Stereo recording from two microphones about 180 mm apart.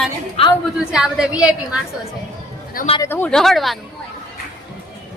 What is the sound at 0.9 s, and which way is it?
Speech, 5° right (ahead or behind).